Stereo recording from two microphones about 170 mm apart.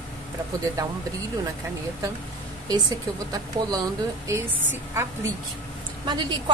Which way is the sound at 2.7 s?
20° right (ahead or behind).